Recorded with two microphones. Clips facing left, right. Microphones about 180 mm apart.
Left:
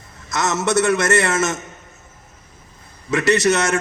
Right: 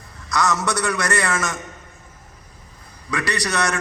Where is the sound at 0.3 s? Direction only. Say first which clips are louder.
Left 1 dB; 25° left (ahead or behind).